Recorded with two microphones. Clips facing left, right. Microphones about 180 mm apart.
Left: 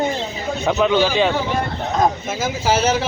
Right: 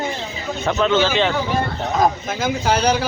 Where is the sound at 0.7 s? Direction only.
15° left (ahead or behind).